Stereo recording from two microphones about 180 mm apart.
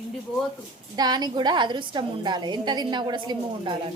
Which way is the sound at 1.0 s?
20° right (ahead or behind).